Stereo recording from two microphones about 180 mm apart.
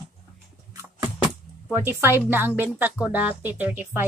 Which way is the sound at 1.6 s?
10° right (ahead or behind).